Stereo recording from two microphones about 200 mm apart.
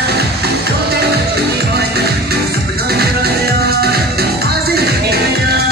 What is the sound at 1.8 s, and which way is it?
Music, 50° right (ahead or behind).